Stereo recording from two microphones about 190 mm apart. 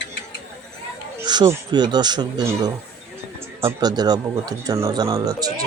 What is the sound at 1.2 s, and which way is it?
Speech, 20° right (ahead or behind).